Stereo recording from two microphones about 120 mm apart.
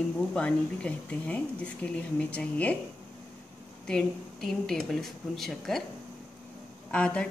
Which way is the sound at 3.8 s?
5° left (ahead or behind).